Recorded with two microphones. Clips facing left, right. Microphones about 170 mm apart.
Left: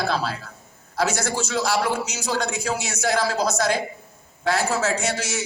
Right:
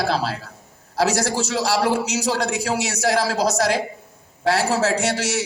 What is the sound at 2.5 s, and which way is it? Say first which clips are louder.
Speech: right 3 dB; 75° right (ahead or behind).